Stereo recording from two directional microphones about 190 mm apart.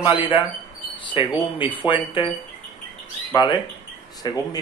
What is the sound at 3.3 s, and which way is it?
Speech, 25° left (ahead or behind).